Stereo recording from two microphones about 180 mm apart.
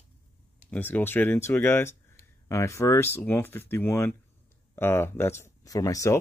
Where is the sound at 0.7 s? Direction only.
10° left (ahead or behind).